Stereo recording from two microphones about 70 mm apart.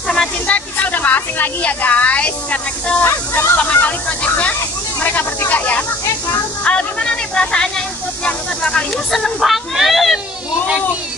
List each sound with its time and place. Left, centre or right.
0.1 s hiss: centre
0.7 s speech: left
3.0 s speech: left
5.0 s snake: left
8.9 s speech: centre